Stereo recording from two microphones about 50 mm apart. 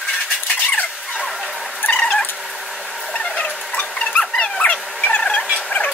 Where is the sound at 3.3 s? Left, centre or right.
Left.